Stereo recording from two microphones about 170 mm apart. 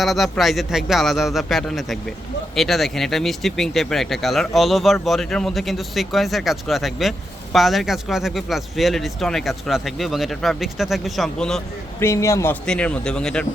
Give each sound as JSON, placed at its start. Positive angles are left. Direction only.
{"t": 0.0, "sound": "speech", "side_deg": 0}
{"t": 11.9, "sound": "a man's voice", "side_deg": 15}
{"t": 12.6, "sound": "speech", "side_deg": 5}